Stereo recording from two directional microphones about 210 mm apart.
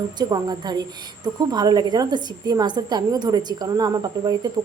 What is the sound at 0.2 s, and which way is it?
A woman's voice, 20° right (ahead or behind).